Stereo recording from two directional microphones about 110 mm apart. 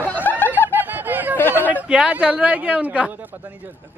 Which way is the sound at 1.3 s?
20° left (ahead or behind).